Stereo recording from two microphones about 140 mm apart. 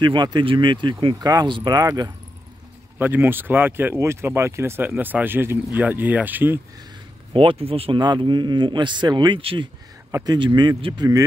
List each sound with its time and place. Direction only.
0.0 s a man's voice: 30° right (ahead or behind)
3.0 s speech: 15° right (ahead or behind)
7.3 s a man's voice: 40° right (ahead or behind); by 11.2 s 25° right (ahead or behind)